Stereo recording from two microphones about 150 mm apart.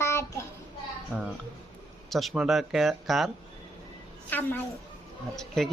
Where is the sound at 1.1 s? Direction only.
10° left (ahead or behind).